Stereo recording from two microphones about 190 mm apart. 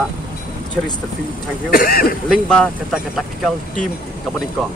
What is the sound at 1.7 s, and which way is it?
Speech, 50° left (ahead or behind).